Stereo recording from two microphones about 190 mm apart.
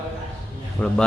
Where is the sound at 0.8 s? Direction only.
5° left (ahead or behind).